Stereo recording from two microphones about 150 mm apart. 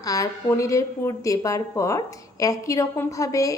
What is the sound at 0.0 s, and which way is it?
A woman's voice, 25° left (ahead or behind).